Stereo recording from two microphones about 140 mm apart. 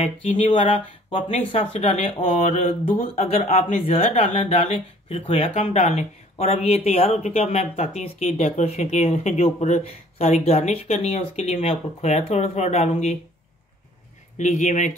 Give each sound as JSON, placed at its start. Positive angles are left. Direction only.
{"t": 1.1, "sound": "speech", "side_deg": 40}
{"t": 14.4, "sound": "speech", "side_deg": 60}